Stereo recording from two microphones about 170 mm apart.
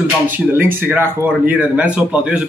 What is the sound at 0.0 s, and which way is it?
Speech, 10° right (ahead or behind).